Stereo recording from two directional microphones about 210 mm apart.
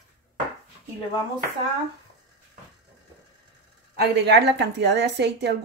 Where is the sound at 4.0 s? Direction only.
50° right (ahead or behind).